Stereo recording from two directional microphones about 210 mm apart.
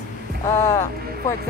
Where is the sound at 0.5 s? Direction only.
15° left (ahead or behind).